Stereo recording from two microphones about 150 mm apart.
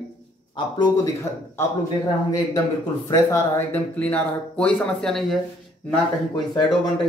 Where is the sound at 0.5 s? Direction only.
30° left (ahead or behind).